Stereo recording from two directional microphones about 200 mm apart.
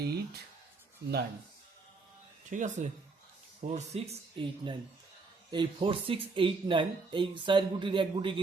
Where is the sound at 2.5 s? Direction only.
40° right (ahead or behind).